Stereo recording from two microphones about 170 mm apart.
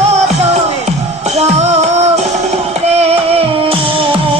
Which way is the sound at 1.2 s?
40° right (ahead or behind).